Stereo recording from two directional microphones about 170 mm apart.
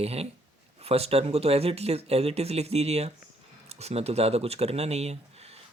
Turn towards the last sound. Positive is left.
turn(degrees=-40)  # may be behind; listen again after turning